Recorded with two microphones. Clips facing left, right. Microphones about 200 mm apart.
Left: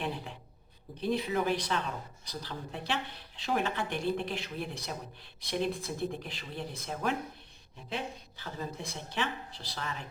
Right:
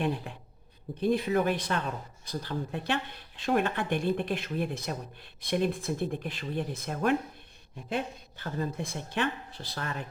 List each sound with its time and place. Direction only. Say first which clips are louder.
0.9 s speech: right 4 dB; 55° right (ahead or behind)